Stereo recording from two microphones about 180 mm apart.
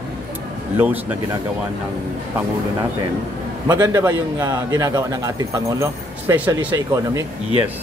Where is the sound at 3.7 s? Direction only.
15° right (ahead or behind).